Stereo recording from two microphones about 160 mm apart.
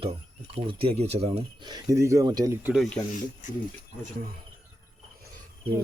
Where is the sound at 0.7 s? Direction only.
35° right (ahead or behind).